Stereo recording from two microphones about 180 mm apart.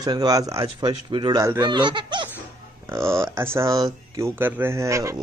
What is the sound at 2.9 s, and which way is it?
Speech, 15° right (ahead or behind).